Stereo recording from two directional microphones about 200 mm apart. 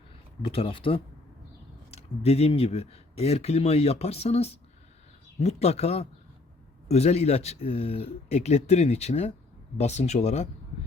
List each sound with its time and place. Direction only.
0.4 s speech: 30° left (ahead or behind)